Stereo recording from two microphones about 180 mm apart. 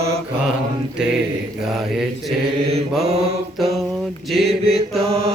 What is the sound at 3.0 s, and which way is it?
Mantra, 35° right (ahead or behind).